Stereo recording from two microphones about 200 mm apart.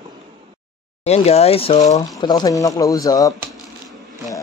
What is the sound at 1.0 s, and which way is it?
Speech, 30° left (ahead or behind).